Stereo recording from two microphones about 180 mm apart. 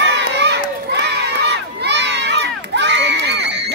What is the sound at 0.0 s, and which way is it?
Crowd, 75° right (ahead or behind).